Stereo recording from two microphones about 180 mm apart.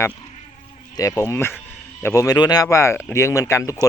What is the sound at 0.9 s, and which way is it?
Speech, 20° left (ahead or behind).